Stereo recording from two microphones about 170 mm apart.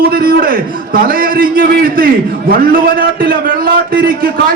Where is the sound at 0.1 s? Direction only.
60° right (ahead or behind).